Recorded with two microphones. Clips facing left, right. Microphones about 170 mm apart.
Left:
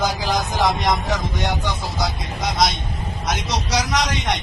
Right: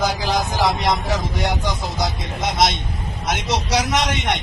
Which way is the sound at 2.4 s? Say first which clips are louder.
Right 1 dB; 25° right (ahead or behind).